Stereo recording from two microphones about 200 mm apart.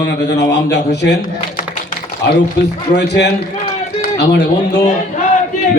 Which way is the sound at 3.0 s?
55° left (ahead or behind).